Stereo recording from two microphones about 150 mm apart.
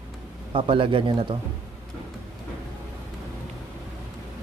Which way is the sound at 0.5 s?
35° right (ahead or behind).